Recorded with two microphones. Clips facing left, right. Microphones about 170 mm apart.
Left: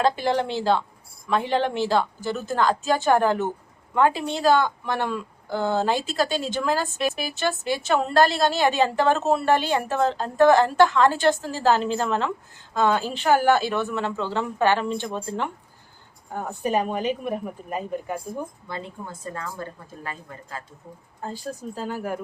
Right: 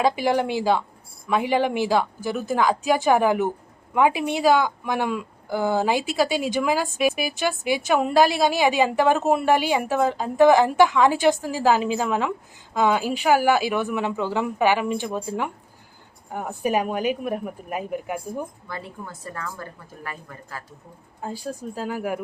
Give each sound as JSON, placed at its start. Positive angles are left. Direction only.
{"t": 0.0, "sound": "a woman's voice", "side_deg": -10}
{"t": 18.7, "sound": "a woman's voice", "side_deg": 20}
{"t": 21.8, "sound": "a woman's voice", "side_deg": -5}